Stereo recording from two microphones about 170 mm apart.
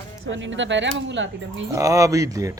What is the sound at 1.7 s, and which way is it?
Speech, 20° right (ahead or behind).